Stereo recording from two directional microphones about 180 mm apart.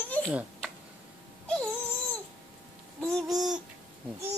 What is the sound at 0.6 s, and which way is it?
Tick-tock, 5° left (ahead or behind).